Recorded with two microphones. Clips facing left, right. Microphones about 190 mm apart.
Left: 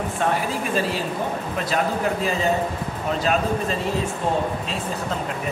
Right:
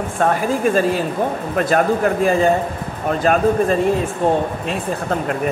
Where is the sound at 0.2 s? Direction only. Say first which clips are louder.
Right 8 dB; 45° right (ahead or behind).